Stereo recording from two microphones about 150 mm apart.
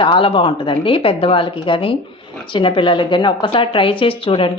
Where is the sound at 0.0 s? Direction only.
35° left (ahead or behind).